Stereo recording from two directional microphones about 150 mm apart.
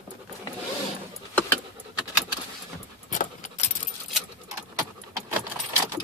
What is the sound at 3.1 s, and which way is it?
Keys jangling, 60° left (ahead or behind).